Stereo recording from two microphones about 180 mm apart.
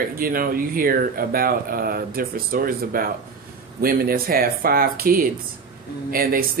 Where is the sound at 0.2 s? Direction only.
55° right (ahead or behind).